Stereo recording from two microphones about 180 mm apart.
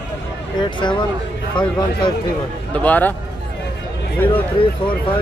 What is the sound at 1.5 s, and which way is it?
Speech, 25° left (ahead or behind).